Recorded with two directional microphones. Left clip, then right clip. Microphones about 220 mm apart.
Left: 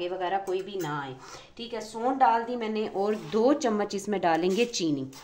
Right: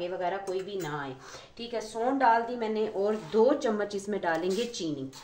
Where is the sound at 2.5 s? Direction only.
55° left (ahead or behind).